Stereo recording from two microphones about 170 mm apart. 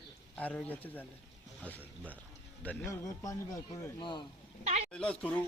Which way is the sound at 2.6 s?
15° left (ahead or behind).